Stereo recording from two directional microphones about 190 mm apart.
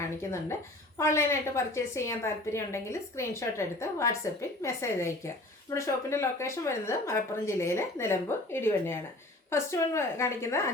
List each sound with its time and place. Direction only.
0.2 s speech: 15° left (ahead or behind)